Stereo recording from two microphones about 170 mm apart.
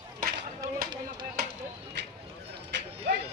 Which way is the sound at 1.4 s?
65° right (ahead or behind).